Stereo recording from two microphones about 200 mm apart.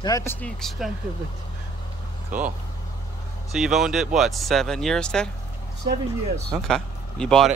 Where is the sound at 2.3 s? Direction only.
10° right (ahead or behind).